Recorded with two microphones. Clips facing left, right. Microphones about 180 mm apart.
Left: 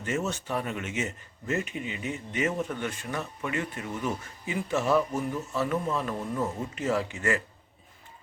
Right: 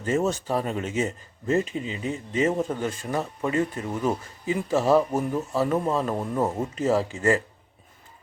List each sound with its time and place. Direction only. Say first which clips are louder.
0.0 s speech: right 6 dB; 35° right (ahead or behind)
6.1 s speech: right 5 dB; 55° right (ahead or behind)
6.7 s speech: right 5 dB; 35° right (ahead or behind)